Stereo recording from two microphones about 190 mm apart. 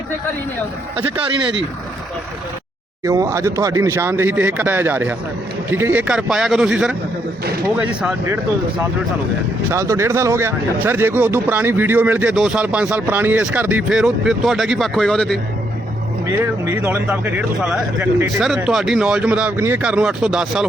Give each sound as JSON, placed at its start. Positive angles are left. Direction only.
{"t": 1.1, "sound": "speech", "side_deg": -25}
{"t": 3.0, "sound": "a man's voice", "side_deg": -15}
{"t": 9.6, "sound": "speech", "side_deg": -15}
{"t": 16.2, "sound": "a man's voice", "side_deg": -15}